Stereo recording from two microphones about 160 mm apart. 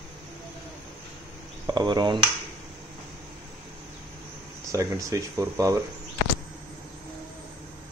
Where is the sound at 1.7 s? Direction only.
25° right (ahead or behind).